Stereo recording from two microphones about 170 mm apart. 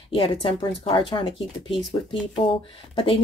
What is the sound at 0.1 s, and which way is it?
Speech, 30° left (ahead or behind).